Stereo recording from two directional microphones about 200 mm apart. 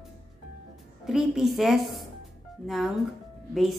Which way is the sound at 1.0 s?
Centre (ahead or behind).